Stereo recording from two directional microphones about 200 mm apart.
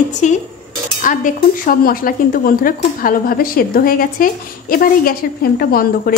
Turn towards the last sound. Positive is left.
turn(degrees=50)  # may be behind; listen again after turning